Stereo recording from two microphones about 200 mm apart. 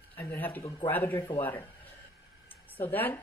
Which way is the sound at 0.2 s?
10° left (ahead or behind).